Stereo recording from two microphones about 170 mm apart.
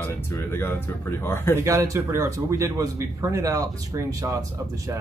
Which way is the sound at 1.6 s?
20° right (ahead or behind).